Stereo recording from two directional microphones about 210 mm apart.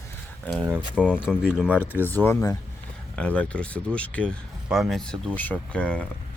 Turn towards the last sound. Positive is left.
turn(degrees=5)  # may be behind; listen again after turning